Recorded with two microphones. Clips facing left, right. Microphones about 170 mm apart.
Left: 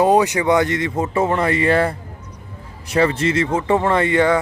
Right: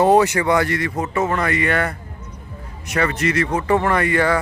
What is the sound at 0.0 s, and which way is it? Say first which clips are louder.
Speech: even; 15° left (ahead or behind).